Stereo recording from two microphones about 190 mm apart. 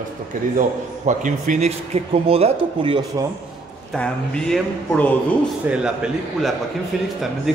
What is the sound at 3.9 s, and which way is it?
Speech, 5° left (ahead or behind).